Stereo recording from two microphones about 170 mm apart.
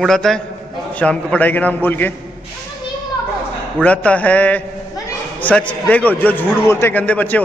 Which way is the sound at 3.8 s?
5° left (ahead or behind).